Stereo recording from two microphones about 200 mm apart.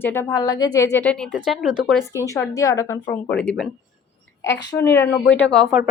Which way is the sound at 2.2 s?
15° left (ahead or behind).